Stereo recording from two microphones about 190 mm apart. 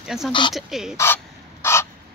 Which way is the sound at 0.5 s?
Centre (ahead or behind).